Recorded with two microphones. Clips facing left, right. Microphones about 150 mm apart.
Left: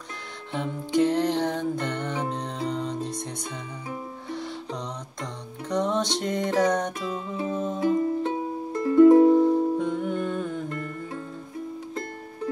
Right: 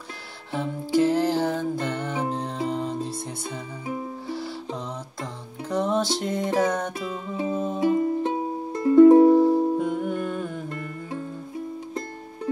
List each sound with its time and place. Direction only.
0.5 s music: 5° right (ahead or behind)
5.2 s music: 5° right (ahead or behind)
8.2 s music: 20° right (ahead or behind)
9.8 s music: 10° right (ahead or behind)